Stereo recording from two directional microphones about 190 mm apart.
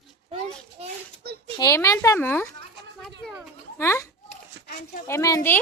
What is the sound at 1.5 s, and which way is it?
Speech, 15° left (ahead or behind).